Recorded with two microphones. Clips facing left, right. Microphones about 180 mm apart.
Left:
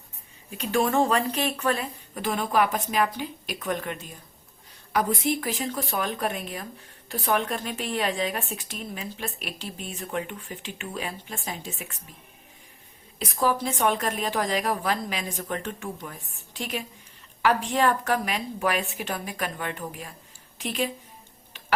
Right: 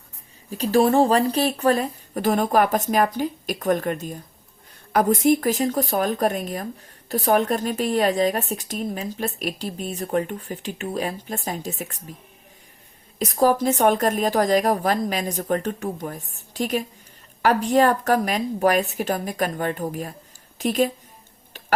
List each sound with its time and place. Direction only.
0.5 s a woman's voice: 35° right (ahead or behind)
13.1 s a woman's voice: 40° right (ahead or behind)